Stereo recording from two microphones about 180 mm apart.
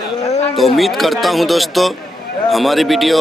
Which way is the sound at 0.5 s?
Centre (ahead or behind).